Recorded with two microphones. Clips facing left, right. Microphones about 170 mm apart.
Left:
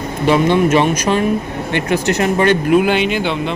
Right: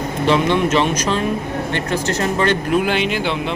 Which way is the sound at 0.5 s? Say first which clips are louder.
Left 4 dB; 10° left (ahead or behind).